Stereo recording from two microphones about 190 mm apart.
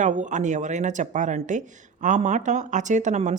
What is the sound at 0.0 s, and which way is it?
A woman's voice, 40° right (ahead or behind).